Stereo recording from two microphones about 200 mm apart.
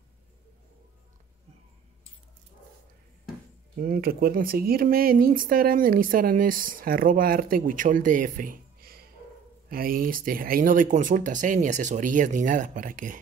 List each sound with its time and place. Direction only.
3.7 s speech: 45° right (ahead or behind)